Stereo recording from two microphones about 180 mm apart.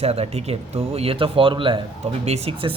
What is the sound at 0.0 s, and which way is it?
A man's voice, 35° right (ahead or behind).